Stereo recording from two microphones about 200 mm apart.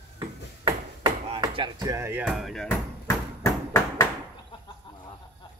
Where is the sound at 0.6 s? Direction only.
25° right (ahead or behind); by 2.6 s centre (ahead or behind).